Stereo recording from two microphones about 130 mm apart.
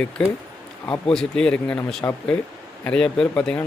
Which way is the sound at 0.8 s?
10° left (ahead or behind).